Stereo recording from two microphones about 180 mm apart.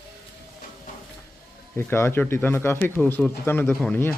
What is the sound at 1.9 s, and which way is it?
Speech, 15° left (ahead or behind).